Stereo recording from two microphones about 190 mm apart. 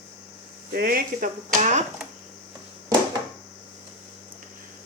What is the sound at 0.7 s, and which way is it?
Speech, 50° right (ahead or behind).